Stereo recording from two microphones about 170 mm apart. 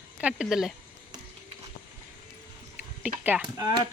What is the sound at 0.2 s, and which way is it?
Speech, 5° right (ahead or behind).